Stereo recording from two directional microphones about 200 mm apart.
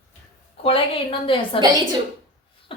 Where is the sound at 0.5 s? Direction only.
30° left (ahead or behind).